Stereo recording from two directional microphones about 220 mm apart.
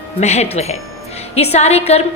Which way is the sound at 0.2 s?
30° left (ahead or behind).